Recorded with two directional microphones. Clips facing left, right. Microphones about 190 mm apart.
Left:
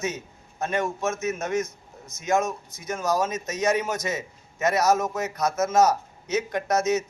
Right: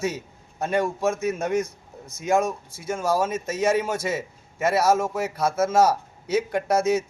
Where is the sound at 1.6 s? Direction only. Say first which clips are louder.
Right 1 dB; 30° right (ahead or behind).